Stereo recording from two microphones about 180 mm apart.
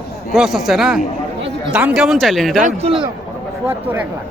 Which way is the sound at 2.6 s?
40° right (ahead or behind).